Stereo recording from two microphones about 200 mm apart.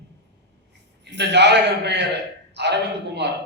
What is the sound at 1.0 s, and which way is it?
A man's voice, 60° right (ahead or behind).